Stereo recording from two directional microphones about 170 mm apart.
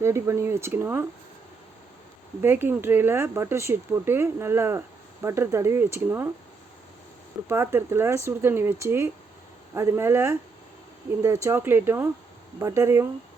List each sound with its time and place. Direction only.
0.0 s speech: 15° right (ahead or behind)
2.4 s speech: 10° right (ahead or behind)
7.4 s speech: 15° right (ahead or behind)